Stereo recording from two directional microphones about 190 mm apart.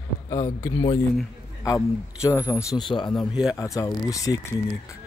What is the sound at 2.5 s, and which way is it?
Speech, 15° left (ahead or behind).